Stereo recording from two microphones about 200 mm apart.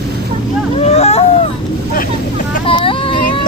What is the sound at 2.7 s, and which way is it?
Vehicle, 25° left (ahead or behind).